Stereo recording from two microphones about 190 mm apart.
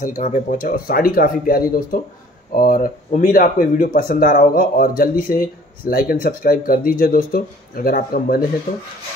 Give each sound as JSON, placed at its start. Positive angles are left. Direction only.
{"t": 0.2, "sound": "speech", "side_deg": 40}